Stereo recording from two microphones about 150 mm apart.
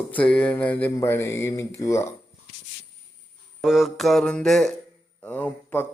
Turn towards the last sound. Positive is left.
turn(degrees=10)  # may be behind; listen again after turning